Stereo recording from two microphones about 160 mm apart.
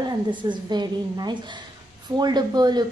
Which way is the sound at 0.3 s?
30° right (ahead or behind).